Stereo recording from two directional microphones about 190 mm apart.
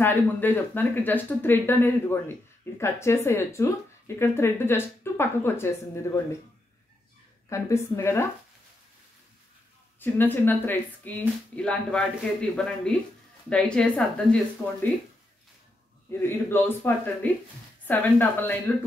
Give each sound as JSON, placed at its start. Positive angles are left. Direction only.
{"t": 0.0, "sound": "speech", "side_deg": 10}
{"t": 7.4, "sound": "speech", "side_deg": 15}
{"t": 9.9, "sound": "speech", "side_deg": 10}
{"t": 16.1, "sound": "speech", "side_deg": 10}